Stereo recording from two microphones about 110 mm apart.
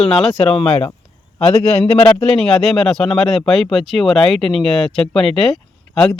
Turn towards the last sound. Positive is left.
turn(degrees=5)  # may be behind; listen again after turning